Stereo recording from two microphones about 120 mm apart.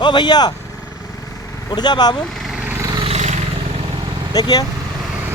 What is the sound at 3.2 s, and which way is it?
Vehicle, 65° right (ahead or behind).